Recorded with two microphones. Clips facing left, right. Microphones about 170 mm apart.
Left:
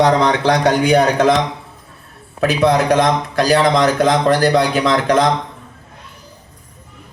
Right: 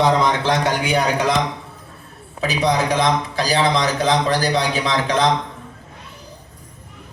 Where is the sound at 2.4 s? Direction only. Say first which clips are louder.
Left 5 dB; 55° left (ahead or behind).